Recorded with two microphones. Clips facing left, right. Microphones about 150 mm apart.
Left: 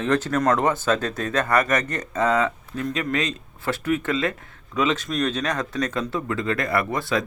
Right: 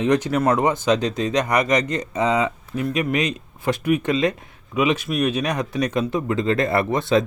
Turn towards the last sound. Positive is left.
turn(degrees=-20)  # may be behind; listen again after turning